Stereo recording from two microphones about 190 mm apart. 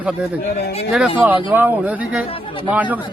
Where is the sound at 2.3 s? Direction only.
30° left (ahead or behind).